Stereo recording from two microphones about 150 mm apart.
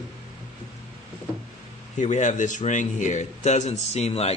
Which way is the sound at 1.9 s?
50° left (ahead or behind).